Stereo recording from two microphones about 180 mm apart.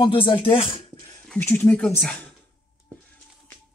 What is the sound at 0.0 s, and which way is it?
Speech, 30° left (ahead or behind).